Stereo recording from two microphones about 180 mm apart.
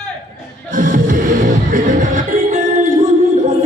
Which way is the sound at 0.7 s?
50° right (ahead or behind).